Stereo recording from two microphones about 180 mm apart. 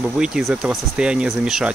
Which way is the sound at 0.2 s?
Centre (ahead or behind).